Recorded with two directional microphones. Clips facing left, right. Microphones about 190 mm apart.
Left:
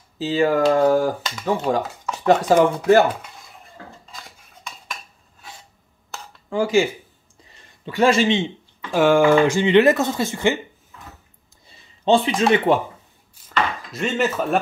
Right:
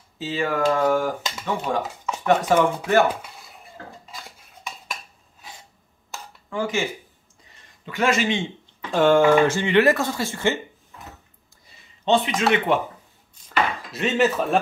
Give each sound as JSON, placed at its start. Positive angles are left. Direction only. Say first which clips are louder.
{"t": 0.2, "sound": "speech", "louder": "left 5 dB", "side_deg": 35}
{"t": 6.5, "sound": "speech", "louder": "left 7 dB", "side_deg": 35}
{"t": 8.9, "sound": "speech", "louder": "left 1 dB", "side_deg": 10}
{"t": 11.6, "sound": "a sound", "louder": "left 4 dB", "side_deg": 30}
{"t": 12.4, "sound": "speech", "louder": "left 4 dB", "side_deg": 35}
{"t": 13.5, "sound": "chopping", "louder": "even", "side_deg": 0}